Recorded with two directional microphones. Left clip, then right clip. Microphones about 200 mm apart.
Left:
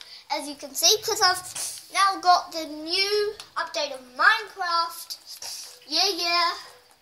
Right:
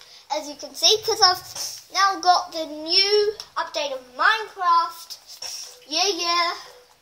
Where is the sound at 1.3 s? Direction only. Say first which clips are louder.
Right 2 dB; 40° left (ahead or behind).